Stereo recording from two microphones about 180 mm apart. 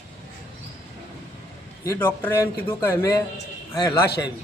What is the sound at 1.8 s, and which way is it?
A man's voice, 15° left (ahead or behind).